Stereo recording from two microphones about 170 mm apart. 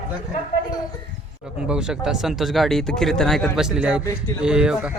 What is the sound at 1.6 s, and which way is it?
Speech, 5° right (ahead or behind).